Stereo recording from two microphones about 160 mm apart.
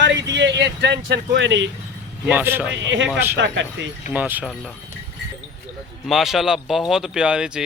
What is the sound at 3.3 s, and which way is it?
Speech, 90° right.